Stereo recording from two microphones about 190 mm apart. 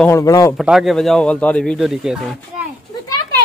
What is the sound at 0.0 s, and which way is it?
Speech, 15° left (ahead or behind).